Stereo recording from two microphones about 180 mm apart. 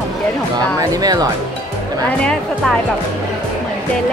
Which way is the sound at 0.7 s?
20° right (ahead or behind).